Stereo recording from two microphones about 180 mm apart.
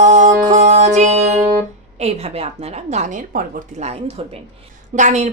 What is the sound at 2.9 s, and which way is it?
Speech, 40° right (ahead or behind).